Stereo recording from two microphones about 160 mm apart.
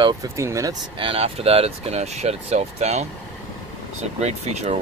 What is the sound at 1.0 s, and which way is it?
Speech, 35° right (ahead or behind).